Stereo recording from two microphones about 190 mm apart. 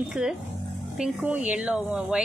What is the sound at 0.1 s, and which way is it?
Speech, 5° right (ahead or behind).